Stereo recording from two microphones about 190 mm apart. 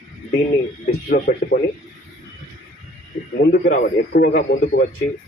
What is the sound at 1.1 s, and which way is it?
Speech, 50° left (ahead or behind).